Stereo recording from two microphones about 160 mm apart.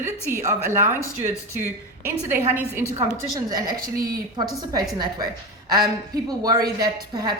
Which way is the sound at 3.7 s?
65° right (ahead or behind).